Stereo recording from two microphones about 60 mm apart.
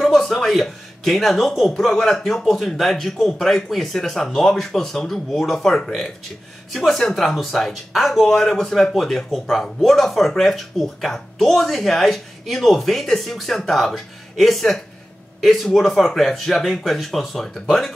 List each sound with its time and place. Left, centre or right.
0.0 s speech: centre